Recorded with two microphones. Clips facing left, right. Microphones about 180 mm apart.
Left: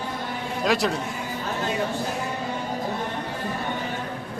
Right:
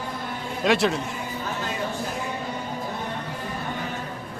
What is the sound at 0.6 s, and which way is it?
Speech, centre (ahead or behind).